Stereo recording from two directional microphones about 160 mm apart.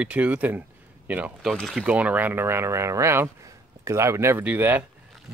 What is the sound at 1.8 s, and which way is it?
Speech, 10° right (ahead or behind).